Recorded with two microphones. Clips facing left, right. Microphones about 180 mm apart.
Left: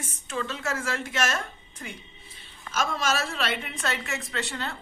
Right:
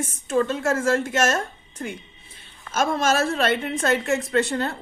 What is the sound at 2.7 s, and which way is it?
Speech, 50° right (ahead or behind).